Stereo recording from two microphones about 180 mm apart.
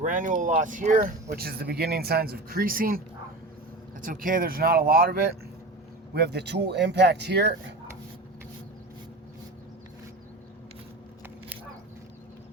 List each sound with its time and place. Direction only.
0.0 s speech: 45° right (ahead or behind)
4.0 s speech: 50° right (ahead or behind)
6.1 s speech: 65° right (ahead or behind)